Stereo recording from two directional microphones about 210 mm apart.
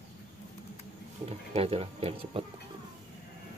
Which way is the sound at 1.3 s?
30° right (ahead or behind).